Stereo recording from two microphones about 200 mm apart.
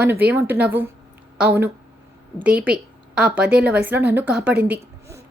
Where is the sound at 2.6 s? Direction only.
5° right (ahead or behind).